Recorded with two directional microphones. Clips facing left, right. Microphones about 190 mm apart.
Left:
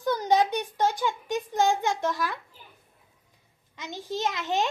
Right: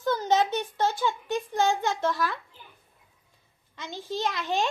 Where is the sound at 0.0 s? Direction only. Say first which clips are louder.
Left 1 dB; 15° left (ahead or behind).